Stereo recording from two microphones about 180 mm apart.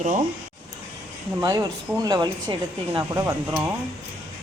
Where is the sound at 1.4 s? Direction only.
20° right (ahead or behind).